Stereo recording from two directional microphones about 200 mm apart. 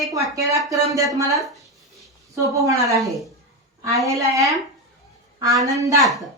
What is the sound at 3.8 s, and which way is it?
Speech, 15° right (ahead or behind).